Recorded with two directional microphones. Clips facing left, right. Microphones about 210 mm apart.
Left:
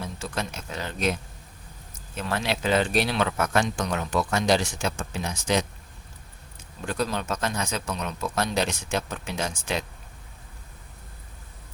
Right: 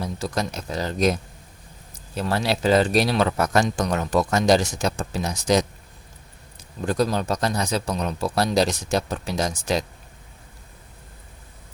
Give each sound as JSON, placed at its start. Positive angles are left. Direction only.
{"t": 0.0, "sound": "speech", "side_deg": -35}
{"t": 6.8, "sound": "speech", "side_deg": -40}